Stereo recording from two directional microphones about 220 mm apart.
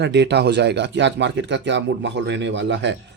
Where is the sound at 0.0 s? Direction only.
50° right (ahead or behind).